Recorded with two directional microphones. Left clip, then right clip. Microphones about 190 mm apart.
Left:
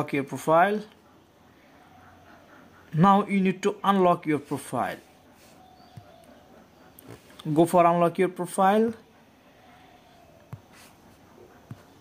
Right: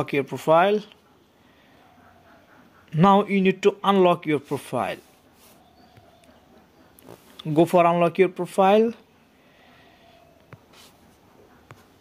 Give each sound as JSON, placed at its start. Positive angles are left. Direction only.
{"t": 0.0, "sound": "speech", "side_deg": -35}
{"t": 2.9, "sound": "speech", "side_deg": -30}
{"t": 7.3, "sound": "speech", "side_deg": -30}